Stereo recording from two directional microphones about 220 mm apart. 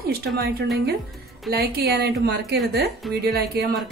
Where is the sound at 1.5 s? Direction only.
45° right (ahead or behind).